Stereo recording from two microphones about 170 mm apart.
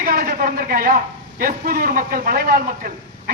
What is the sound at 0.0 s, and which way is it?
A man's voice, 55° right (ahead or behind).